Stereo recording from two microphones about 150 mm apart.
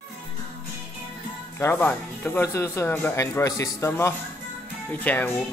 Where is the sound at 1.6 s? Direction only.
15° left (ahead or behind).